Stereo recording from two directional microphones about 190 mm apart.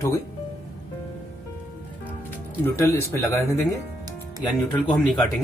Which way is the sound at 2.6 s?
15° left (ahead or behind).